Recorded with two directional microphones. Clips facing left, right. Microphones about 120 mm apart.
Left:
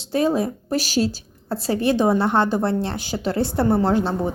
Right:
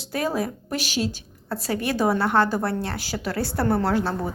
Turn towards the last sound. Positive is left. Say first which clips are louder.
# left 4 dB
turn(degrees=20)  # may be behind; listen again after turning